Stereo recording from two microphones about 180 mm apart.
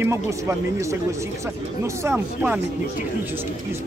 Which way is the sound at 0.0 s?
15° right (ahead or behind).